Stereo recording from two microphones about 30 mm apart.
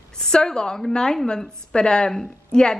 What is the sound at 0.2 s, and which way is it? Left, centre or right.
A woman's voice, left.